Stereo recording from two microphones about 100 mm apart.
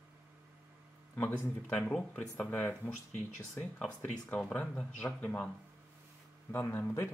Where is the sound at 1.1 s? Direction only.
20° left (ahead or behind).